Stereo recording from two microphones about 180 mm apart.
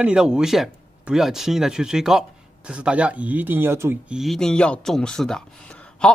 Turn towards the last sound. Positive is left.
turn(degrees=5)  # may be behind; listen again after turning